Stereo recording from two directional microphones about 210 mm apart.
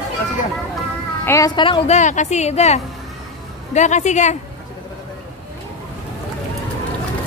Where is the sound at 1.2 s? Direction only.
15° left (ahead or behind); by 4.3 s 35° left (ahead or behind).